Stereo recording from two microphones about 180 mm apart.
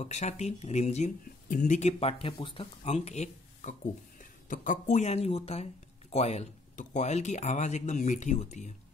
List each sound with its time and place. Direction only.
0.0 s speech: 40° left (ahead or behind)